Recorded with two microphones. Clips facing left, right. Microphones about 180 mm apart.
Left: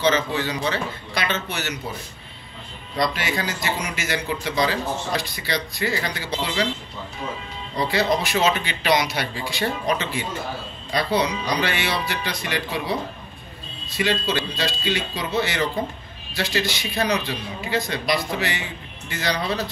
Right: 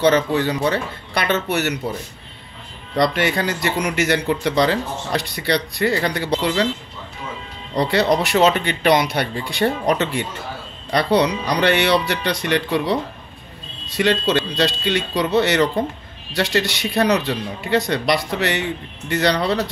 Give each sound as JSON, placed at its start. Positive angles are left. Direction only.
{"t": 0.0, "sound": "speech", "side_deg": -60}
{"t": 3.0, "sound": "speech", "side_deg": -65}
{"t": 7.7, "sound": "a man's voice", "side_deg": -70}